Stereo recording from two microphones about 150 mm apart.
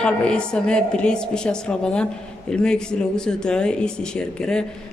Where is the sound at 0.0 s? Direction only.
5° left (ahead or behind).